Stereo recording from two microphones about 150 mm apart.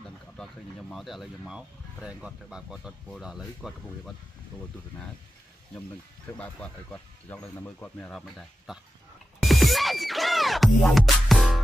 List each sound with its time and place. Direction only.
0.9 s speech: centre (ahead or behind)
6.3 s speech: 10° left (ahead or behind)
9.4 s music: centre (ahead or behind)